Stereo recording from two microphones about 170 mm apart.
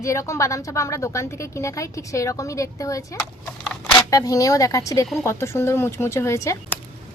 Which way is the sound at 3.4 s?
5° left (ahead or behind).